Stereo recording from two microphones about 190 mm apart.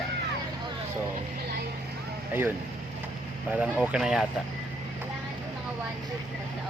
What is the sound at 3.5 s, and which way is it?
Speech, 5° right (ahead or behind).